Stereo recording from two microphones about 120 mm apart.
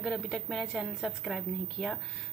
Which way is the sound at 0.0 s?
Centre (ahead or behind).